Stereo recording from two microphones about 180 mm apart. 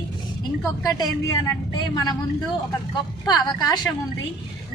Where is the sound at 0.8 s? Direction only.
20° left (ahead or behind).